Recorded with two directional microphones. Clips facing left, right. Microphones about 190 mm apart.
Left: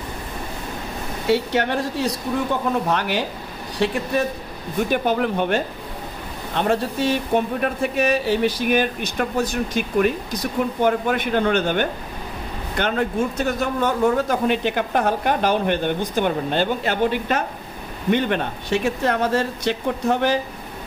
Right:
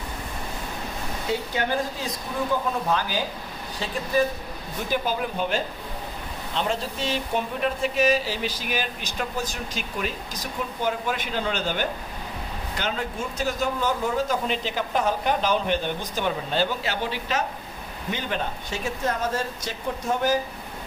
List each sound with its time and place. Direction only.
1.2 s a man's voice: 75° left (ahead or behind)